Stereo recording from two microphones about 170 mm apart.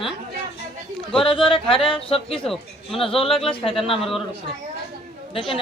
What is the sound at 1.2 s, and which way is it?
A woman's voice, 30° left (ahead or behind).